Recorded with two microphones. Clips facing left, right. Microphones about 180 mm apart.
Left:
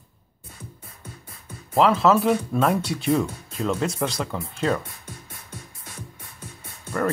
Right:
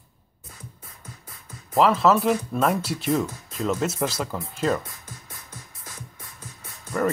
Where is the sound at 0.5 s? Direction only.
30° left (ahead or behind).